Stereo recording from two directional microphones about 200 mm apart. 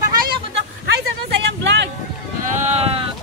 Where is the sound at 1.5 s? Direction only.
60° right (ahead or behind).